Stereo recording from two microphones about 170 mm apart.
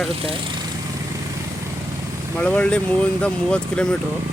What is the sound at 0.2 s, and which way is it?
Speech, 35° right (ahead or behind).